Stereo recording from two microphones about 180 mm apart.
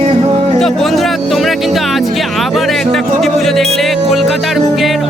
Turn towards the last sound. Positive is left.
turn(degrees=0)  # may be behind; listen again after turning